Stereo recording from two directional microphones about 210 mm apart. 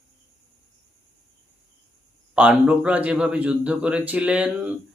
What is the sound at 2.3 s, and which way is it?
A man's voice, 5° right (ahead or behind).